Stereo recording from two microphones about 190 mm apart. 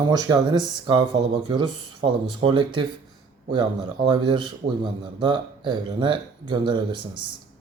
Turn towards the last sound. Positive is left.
turn(degrees=-25)  # may be behind; listen again after turning